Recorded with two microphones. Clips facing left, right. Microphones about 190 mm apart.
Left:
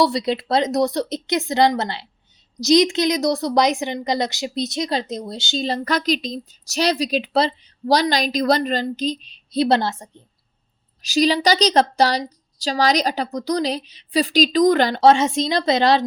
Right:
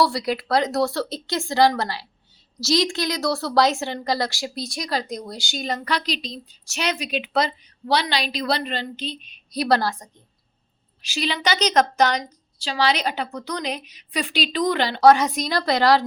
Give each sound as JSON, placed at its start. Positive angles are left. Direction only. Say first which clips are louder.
{"t": 0.0, "sound": "a woman's voice", "louder": "left 3 dB", "side_deg": 20}
{"t": 5.8, "sound": "speech", "louder": "left 5 dB", "side_deg": 45}
{"t": 11.0, "sound": "speech", "louder": "left 8 dB", "side_deg": 40}
{"t": 15.0, "sound": "a woman's voice", "louder": "right 1 dB", "side_deg": 25}